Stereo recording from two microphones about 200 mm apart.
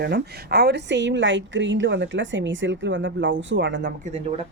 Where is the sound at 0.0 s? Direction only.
55° right (ahead or behind).